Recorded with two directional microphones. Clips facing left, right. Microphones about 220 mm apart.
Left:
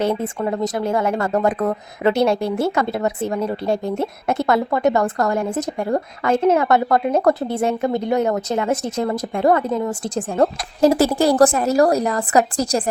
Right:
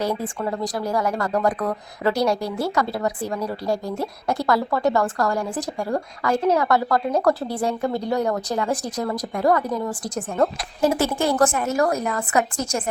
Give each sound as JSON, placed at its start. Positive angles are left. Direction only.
{"t": 0.0, "sound": "a woman's voice", "side_deg": 25}